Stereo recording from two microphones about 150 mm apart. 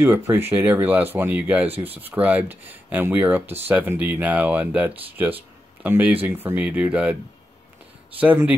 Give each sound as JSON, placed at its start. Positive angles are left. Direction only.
{"t": 0.0, "sound": "speech", "side_deg": -15}
{"t": 1.7, "sound": "speech", "side_deg": -40}
{"t": 2.0, "sound": "speech", "side_deg": -10}
{"t": 8.2, "sound": "speech", "side_deg": -10}